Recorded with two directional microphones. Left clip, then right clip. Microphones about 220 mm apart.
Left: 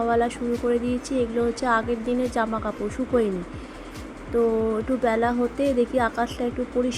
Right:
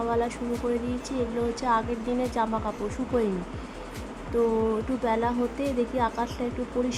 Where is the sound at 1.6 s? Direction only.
10° left (ahead or behind).